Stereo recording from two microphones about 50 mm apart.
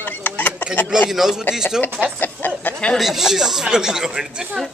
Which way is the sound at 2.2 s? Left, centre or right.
Left.